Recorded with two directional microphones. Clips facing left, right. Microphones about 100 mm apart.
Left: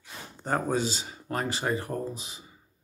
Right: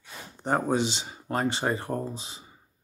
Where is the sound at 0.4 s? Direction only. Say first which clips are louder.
Right 2 dB; 20° right (ahead or behind).